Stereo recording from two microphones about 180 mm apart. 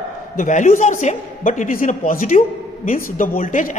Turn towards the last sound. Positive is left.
turn(degrees=45)  # may be behind; listen again after turning